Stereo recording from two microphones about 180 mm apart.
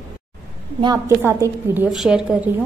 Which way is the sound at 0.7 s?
20° right (ahead or behind).